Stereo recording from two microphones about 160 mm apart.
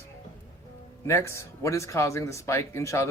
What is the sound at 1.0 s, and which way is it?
Speech, 15° left (ahead or behind).